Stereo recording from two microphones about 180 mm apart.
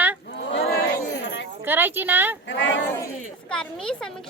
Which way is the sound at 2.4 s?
85° left.